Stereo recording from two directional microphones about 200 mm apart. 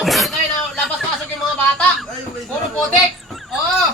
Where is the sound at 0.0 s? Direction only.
Centre (ahead or behind).